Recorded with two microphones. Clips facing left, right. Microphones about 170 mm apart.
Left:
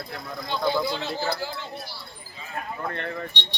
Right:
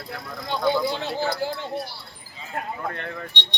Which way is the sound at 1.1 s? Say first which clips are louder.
Right 3 dB; 55° right (ahead or behind).